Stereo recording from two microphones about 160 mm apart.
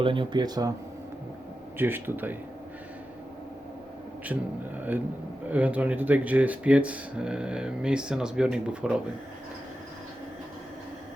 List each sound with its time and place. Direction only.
0.0 s speech: 30° right (ahead or behind)
1.8 s speech: 15° right (ahead or behind)
4.3 s speech: 10° right (ahead or behind)